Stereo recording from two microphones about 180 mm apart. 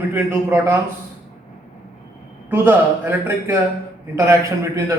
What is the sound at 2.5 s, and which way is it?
A man's voice, 10° right (ahead or behind).